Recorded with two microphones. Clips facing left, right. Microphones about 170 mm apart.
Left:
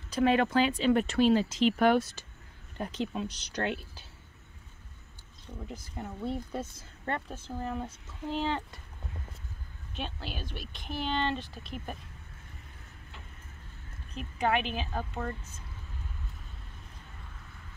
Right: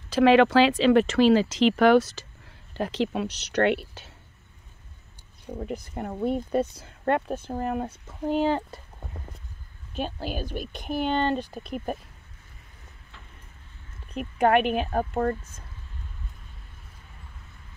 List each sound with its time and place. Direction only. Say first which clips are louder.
0.1 s speech: right 8 dB; 90° right; by 4.1 s 75° right (ahead or behind)
5.5 s speech: right 9 dB; 65° right (ahead or behind)
8.5 s speech: right 7 dB; 35° right (ahead or behind)
9.9 s speech: right 8 dB; 40° right (ahead or behind)
14.1 s speech: right 8 dB; 60° right (ahead or behind)